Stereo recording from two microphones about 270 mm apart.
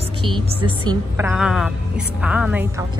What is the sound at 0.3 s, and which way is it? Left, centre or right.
Speech, centre.